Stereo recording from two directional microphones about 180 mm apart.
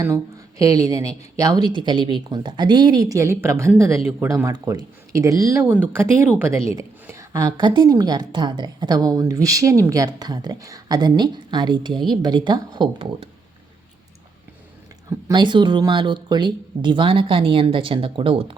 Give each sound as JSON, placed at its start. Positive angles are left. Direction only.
{"t": 0.6, "sound": "a woman's voice", "side_deg": -20}
{"t": 15.3, "sound": "a woman's voice", "side_deg": -25}